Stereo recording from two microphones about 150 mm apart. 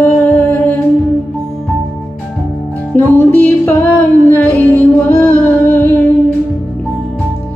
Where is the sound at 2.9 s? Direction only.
15° left (ahead or behind).